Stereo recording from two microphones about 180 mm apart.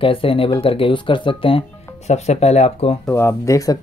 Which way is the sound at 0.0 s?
30° left (ahead or behind).